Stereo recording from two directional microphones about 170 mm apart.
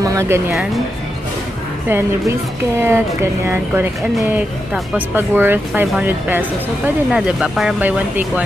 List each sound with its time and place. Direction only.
0.0 s speech: 20° right (ahead or behind)
1.9 s speech: 15° right (ahead or behind)